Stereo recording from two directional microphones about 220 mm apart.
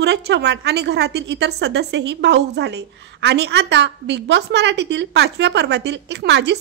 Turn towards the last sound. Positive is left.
turn(degrees=-50)  # may be behind; listen again after turning